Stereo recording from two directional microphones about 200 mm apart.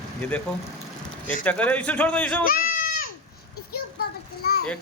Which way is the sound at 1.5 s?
5° left (ahead or behind).